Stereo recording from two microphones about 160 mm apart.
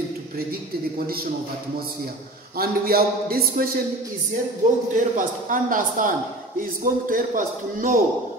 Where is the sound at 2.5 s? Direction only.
70° right (ahead or behind).